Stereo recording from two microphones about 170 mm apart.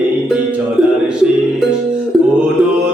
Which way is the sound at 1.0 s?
5° right (ahead or behind).